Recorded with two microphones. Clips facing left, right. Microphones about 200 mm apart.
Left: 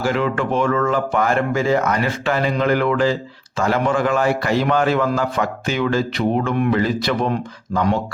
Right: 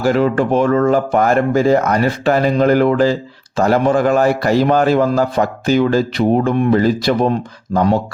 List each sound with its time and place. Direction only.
0.0 s speech: 40° right (ahead or behind)